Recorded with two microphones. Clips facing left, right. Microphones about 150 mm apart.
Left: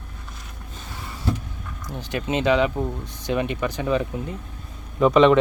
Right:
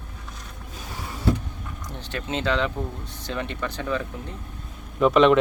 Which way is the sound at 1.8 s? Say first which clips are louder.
Left 5 dB; 10° left (ahead or behind).